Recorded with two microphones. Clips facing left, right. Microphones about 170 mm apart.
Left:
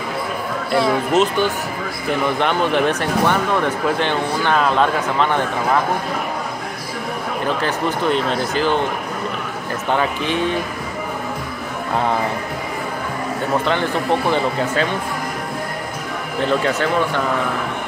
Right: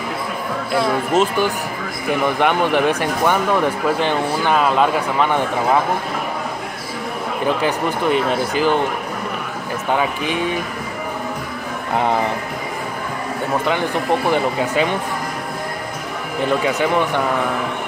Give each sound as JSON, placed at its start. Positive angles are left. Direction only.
{"t": 0.7, "sound": "speech", "side_deg": -5}
{"t": 7.6, "sound": "speech", "side_deg": -10}
{"t": 9.9, "sound": "speech", "side_deg": -10}
{"t": 11.9, "sound": "speech", "side_deg": -20}
{"t": 14.3, "sound": "speech", "side_deg": -15}
{"t": 16.6, "sound": "speech", "side_deg": -15}